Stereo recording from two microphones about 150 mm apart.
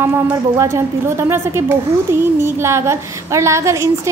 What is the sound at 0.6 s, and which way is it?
A woman's voice, 20° right (ahead or behind).